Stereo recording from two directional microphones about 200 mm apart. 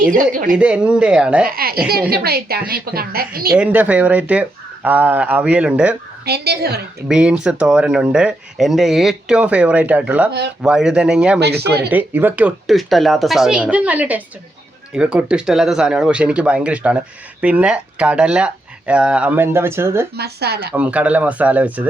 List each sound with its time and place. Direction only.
0.0 s speech: 40° right (ahead or behind)
0.5 s speech: 5° right (ahead or behind)
1.5 s a woman's voice: 50° right (ahead or behind)
3.5 s speech: 5° right (ahead or behind)
6.2 s a woman's voice: 55° right (ahead or behind)
7.1 s speech: 5° right (ahead or behind)
11.3 s speech: 55° right (ahead or behind)
11.9 s speech: 10° right (ahead or behind)
20.1 s a woman's voice: 55° right (ahead or behind)
20.7 s speech: 5° right (ahead or behind)